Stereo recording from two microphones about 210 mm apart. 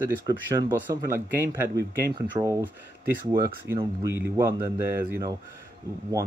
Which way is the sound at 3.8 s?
15° right (ahead or behind).